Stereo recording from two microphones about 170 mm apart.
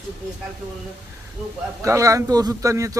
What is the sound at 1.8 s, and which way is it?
A man's voice, 20° right (ahead or behind).